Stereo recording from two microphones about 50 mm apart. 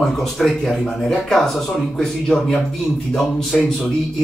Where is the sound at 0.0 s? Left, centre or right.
Centre.